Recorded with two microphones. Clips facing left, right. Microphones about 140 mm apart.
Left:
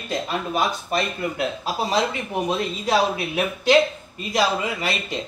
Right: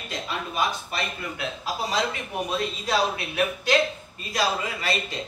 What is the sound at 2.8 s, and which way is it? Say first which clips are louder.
A man's voice: left 6 dB; 20° left (ahead or behind).